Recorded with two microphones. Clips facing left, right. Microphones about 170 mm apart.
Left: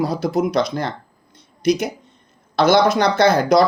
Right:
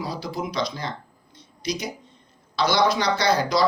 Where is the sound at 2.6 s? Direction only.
50° left (ahead or behind).